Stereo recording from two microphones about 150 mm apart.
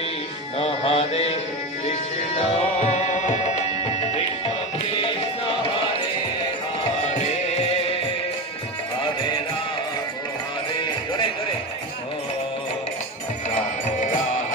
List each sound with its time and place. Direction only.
0.6 s music: 45° left (ahead or behind)
7.2 s music: 45° left (ahead or behind)